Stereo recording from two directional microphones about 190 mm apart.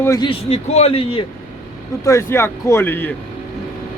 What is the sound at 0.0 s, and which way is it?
Speech, 15° left (ahead or behind).